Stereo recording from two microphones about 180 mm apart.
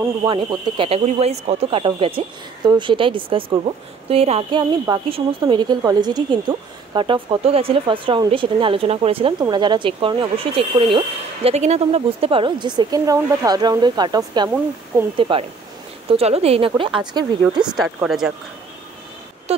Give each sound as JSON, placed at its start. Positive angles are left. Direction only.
{"t": 0.2, "sound": "a woman's voice", "side_deg": -25}
{"t": 17.7, "sound": "a woman's voice", "side_deg": 0}